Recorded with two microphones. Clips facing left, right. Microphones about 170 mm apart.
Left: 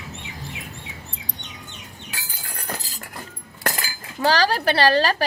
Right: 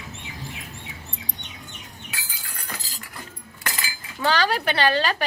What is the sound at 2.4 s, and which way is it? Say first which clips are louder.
Chink: left 8 dB; 45° left (ahead or behind).